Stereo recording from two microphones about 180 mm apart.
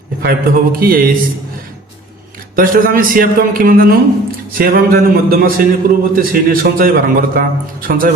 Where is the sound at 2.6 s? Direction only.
50° right (ahead or behind).